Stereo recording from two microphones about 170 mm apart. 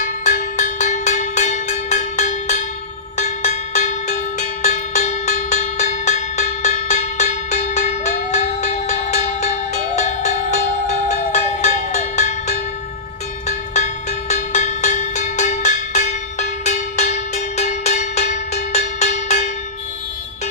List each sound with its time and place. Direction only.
0.3 s cowbell: 50° left (ahead or behind)
3.2 s music: 45° left (ahead or behind)
11.3 s cowbell: 45° left (ahead or behind)
13.7 s music: 45° left (ahead or behind)